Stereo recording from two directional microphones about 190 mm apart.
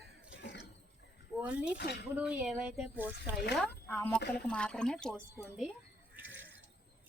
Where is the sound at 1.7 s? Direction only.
60° left (ahead or behind).